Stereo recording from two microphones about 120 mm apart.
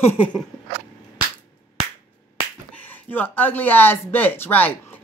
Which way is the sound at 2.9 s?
15° left (ahead or behind).